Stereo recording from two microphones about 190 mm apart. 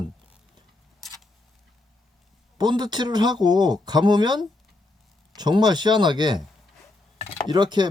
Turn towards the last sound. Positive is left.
turn(degrees=-25)  # may be behind; listen again after turning